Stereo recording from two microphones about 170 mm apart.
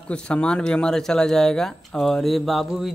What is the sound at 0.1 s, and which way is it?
Speech, 5° left (ahead or behind).